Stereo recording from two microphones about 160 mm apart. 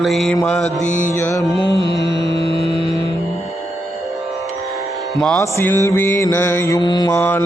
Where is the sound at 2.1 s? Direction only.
90° left.